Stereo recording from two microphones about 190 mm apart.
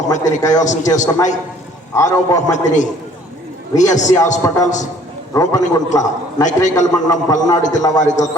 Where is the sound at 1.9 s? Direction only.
20° left (ahead or behind).